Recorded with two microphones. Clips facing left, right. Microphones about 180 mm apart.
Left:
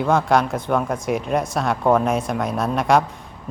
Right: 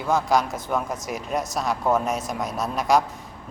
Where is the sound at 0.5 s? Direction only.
55° left (ahead or behind).